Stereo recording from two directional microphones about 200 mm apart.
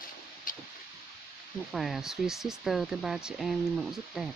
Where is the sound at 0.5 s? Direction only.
45° left (ahead or behind).